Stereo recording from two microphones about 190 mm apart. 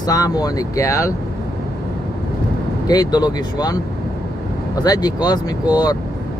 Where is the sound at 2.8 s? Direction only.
20° left (ahead or behind).